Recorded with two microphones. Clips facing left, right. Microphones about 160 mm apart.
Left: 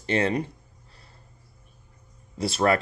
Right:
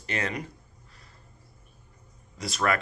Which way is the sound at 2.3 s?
30° left (ahead or behind).